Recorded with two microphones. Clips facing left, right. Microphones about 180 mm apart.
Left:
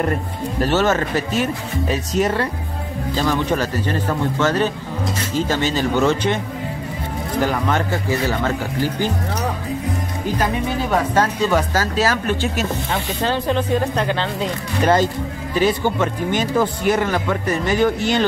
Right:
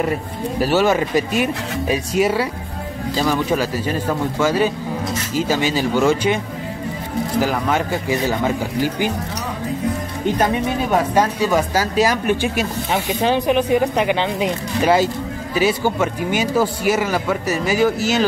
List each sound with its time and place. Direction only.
0.0 s speech: 5° right (ahead or behind)
10.9 s speech: 10° right (ahead or behind)